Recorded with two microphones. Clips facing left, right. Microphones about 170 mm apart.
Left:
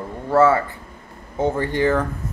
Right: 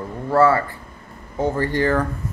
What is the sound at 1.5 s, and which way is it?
Speech, 15° left (ahead or behind).